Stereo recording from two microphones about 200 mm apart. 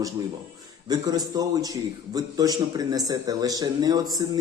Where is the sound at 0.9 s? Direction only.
20° right (ahead or behind).